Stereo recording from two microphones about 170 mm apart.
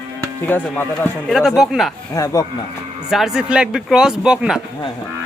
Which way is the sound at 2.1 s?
20° left (ahead or behind).